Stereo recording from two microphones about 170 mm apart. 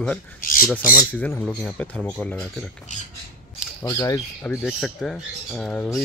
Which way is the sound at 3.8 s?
20° left (ahead or behind).